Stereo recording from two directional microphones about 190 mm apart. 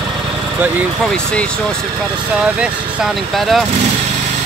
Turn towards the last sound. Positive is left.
turn(degrees=0)  # may be behind; listen again after turning